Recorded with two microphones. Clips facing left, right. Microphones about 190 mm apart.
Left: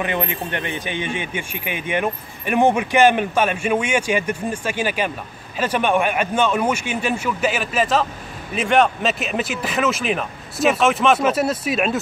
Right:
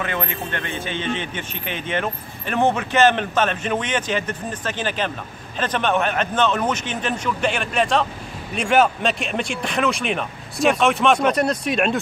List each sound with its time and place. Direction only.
0.0 s a man's voice: 15° left (ahead or behind)